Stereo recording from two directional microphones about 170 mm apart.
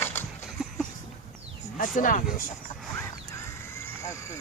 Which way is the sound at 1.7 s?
55° left (ahead or behind).